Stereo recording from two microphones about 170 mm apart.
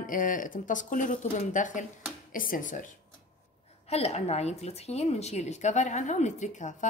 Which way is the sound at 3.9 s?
40° left (ahead or behind).